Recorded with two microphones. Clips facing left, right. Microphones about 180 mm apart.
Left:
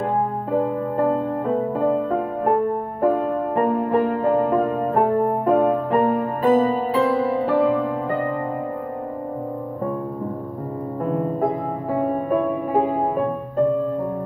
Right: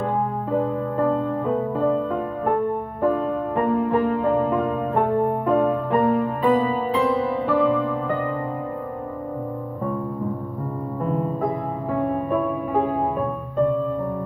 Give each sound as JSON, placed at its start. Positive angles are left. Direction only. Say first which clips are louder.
{"t": 1.9, "sound": "music", "louder": "left 2 dB", "side_deg": 40}
{"t": 11.1, "sound": "music", "louder": "left 2 dB", "side_deg": 45}
{"t": 11.9, "sound": "music", "louder": "left 2 dB", "side_deg": 35}